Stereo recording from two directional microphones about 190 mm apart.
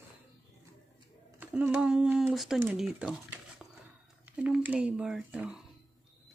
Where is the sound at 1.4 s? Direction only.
10° right (ahead or behind).